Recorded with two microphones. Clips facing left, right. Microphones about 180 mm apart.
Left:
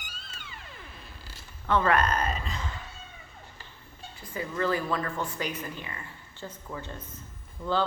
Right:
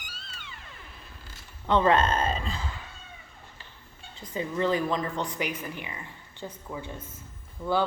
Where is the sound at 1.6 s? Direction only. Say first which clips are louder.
Right 2 dB; 20° right (ahead or behind).